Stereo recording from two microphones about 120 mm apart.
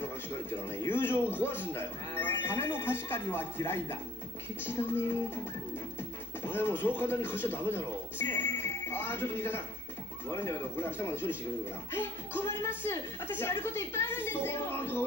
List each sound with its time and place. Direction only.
0.7 s speech: 20° left (ahead or behind)
6.4 s speech: 15° left (ahead or behind)
11.9 s music: 20° left (ahead or behind)
12.6 s speech: 20° left (ahead or behind)